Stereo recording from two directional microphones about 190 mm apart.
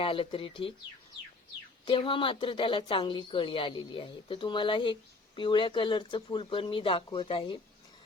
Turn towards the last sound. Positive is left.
turn(degrees=25)  # may be behind; listen again after turning